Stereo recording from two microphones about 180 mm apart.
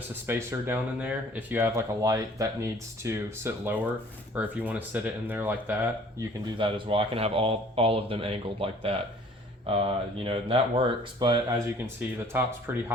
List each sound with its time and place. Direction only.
0.3 s speech: 15° right (ahead or behind)
6.6 s speech: 30° right (ahead or behind)
11.9 s speech: 10° right (ahead or behind)